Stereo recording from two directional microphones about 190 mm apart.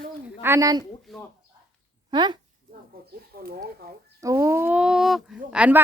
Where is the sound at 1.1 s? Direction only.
Centre (ahead or behind).